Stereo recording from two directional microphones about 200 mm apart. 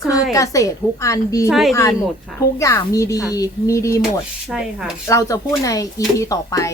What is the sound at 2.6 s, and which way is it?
Speech, 15° left (ahead or behind).